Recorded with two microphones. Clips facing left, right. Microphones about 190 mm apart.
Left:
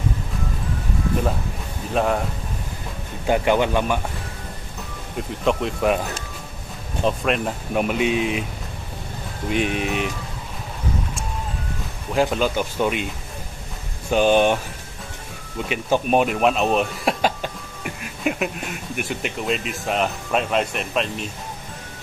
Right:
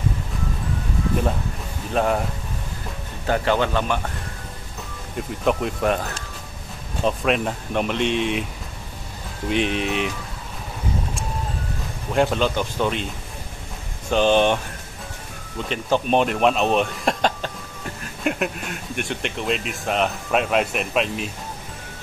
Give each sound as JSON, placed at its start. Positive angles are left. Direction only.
{"t": 2.0, "sound": "speech", "side_deg": 0}
{"t": 3.3, "sound": "speech", "side_deg": 15}
{"t": 5.1, "sound": "speech", "side_deg": 0}
{"t": 7.1, "sound": "speech", "side_deg": 0}
{"t": 9.5, "sound": "speech", "side_deg": 5}
{"t": 12.1, "sound": "speech", "side_deg": 0}
{"t": 14.1, "sound": "speech", "side_deg": 10}
{"t": 15.7, "sound": "speech", "side_deg": 10}